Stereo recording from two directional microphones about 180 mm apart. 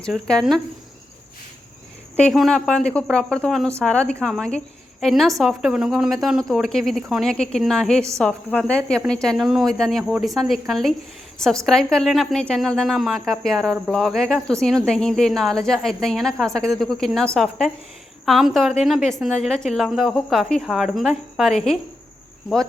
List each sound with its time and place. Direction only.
0.0 s a woman's voice: 5° left (ahead or behind)
2.2 s a woman's voice: centre (ahead or behind)